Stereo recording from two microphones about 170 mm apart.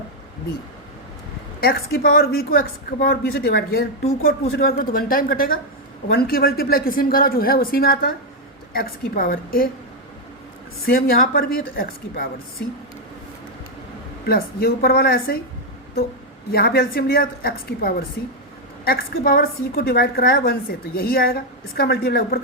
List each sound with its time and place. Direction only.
1.6 s a woman's voice: 60° left (ahead or behind)
10.8 s a woman's voice: 60° left (ahead or behind)
14.3 s a woman's voice: 60° left (ahead or behind)
16.5 s a woman's voice: 65° left (ahead or behind)